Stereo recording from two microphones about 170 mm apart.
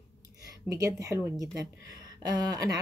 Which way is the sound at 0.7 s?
20° right (ahead or behind).